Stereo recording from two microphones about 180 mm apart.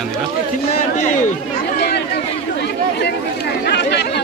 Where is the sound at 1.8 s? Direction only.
65° left (ahead or behind).